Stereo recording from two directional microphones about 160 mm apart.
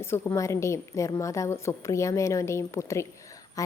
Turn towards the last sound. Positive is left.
turn(degrees=20)  # may be behind; listen again after turning